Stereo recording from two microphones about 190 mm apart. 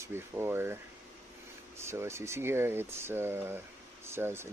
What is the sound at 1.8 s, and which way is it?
Speech, 15° right (ahead or behind).